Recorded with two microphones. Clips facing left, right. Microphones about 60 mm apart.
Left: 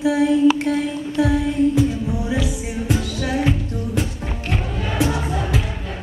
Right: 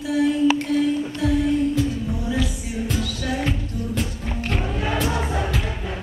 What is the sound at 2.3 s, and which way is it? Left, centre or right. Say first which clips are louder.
Music: left 2 dB; centre.